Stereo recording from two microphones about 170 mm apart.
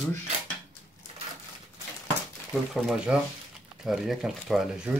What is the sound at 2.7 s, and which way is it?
Speech, centre (ahead or behind).